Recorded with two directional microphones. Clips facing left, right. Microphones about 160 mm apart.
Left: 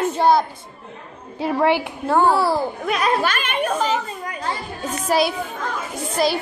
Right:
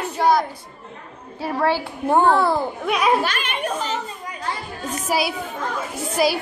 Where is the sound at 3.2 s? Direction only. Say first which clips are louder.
Left 2 dB; 50° left (ahead or behind).